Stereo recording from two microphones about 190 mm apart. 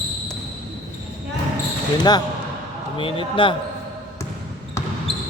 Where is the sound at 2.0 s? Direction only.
20° left (ahead or behind).